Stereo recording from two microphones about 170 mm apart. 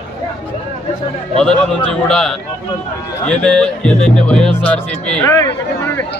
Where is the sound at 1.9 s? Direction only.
5° left (ahead or behind).